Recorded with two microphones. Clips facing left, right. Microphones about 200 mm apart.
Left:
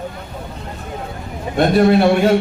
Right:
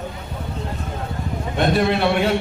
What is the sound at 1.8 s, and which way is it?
Speech, 45° left (ahead or behind).